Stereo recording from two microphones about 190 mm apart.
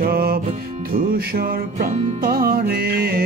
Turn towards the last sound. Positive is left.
turn(degrees=-50)  # may be behind; listen again after turning